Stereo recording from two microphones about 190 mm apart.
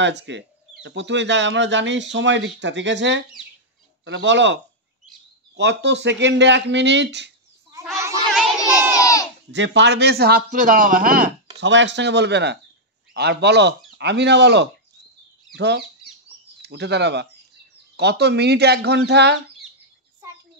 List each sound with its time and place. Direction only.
0.0 s speech: 70° right (ahead or behind)
5.6 s speech: 65° right (ahead or behind)
8.0 s a sound: 15° right (ahead or behind)
9.0 s a sound: 20° left (ahead or behind)
9.5 s a man's voice: 70° right (ahead or behind); by 11.3 s 45° right (ahead or behind)
11.5 s speech: 70° right (ahead or behind)